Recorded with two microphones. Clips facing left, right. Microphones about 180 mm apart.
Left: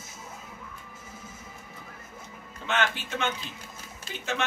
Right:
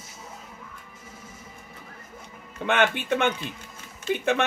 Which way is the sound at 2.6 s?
60° right (ahead or behind).